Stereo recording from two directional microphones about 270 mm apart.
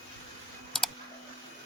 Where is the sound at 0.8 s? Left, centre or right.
Centre.